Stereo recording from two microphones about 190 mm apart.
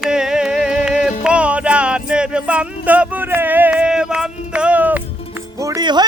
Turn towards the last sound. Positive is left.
turn(degrees=-20)  # may be behind; listen again after turning